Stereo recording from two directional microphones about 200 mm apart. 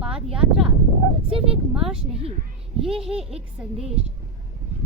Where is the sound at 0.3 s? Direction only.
5° right (ahead or behind).